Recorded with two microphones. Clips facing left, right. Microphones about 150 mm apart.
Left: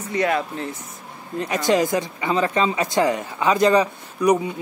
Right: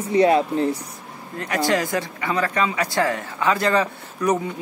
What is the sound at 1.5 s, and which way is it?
Speech, 20° left (ahead or behind).